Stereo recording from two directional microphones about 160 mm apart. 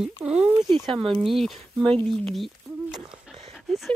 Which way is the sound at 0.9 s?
Centre (ahead or behind).